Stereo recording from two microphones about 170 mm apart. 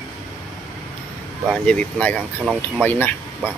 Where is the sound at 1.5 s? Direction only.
5° left (ahead or behind).